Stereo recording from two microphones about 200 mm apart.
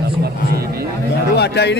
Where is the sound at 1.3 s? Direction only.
55° left (ahead or behind).